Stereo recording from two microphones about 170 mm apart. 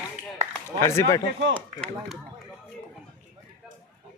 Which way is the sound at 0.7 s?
15° left (ahead or behind).